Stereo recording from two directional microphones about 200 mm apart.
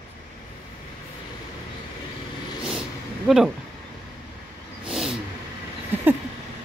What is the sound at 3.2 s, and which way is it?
Speech, centre (ahead or behind).